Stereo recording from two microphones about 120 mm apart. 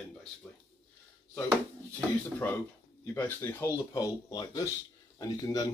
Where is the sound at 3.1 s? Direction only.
15° left (ahead or behind); by 5.6 s 30° left (ahead or behind).